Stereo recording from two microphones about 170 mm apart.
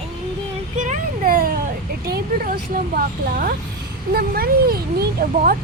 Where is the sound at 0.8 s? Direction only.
50° right (ahead or behind).